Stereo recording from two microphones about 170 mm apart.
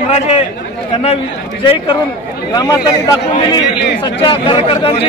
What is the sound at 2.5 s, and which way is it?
Speech, 20° left (ahead or behind).